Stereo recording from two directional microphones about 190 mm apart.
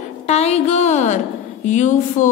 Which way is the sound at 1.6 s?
40° left (ahead or behind).